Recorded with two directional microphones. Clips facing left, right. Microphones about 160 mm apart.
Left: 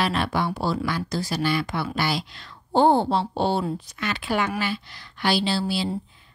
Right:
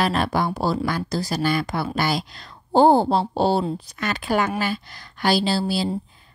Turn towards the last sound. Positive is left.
turn(degrees=-40)  # may be behind; listen again after turning